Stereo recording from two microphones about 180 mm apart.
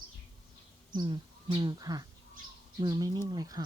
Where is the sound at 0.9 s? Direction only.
25° right (ahead or behind).